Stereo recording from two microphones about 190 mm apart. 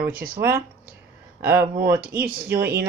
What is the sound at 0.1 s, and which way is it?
Speech, 50° right (ahead or behind).